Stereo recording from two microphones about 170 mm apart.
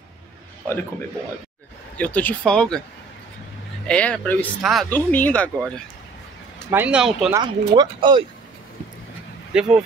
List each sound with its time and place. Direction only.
2.0 s speech: 10° left (ahead or behind)
3.8 s speech: 5° left (ahead or behind)
4.8 s speech: 10° left (ahead or behind)
6.7 s speech: 10° right (ahead or behind)
7.3 s speech: 25° right (ahead or behind)
9.5 s speech: 5° right (ahead or behind)